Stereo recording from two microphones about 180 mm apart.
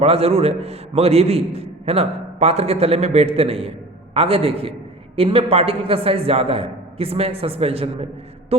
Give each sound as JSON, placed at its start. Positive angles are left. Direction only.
{"t": 0.0, "sound": "a man's voice", "side_deg": -35}